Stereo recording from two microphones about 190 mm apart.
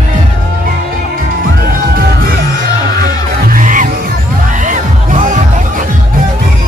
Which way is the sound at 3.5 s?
45° right (ahead or behind).